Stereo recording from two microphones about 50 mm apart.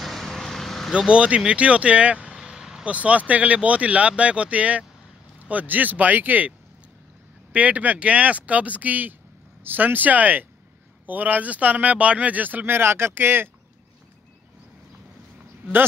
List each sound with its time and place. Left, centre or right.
0.0 s vehicle: centre
0.9 s speech: right
2.3 s vehicle: centre
2.8 s speech: right
7.5 s speech: right